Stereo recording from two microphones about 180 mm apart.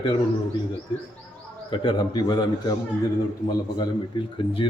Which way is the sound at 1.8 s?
25° left (ahead or behind).